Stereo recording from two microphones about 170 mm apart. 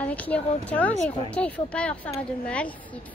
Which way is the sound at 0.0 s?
10° left (ahead or behind).